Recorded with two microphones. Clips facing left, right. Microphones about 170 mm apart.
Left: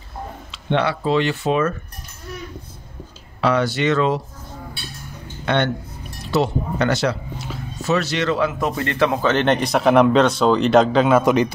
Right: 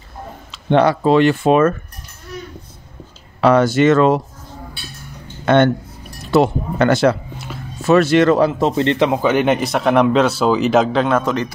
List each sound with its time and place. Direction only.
0.5 s speech: 40° right (ahead or behind)
3.3 s speech: 45° right (ahead or behind)
5.4 s speech: 45° right (ahead or behind)
8.5 s a man's voice: 25° right (ahead or behind); by 11.5 s 15° left (ahead or behind)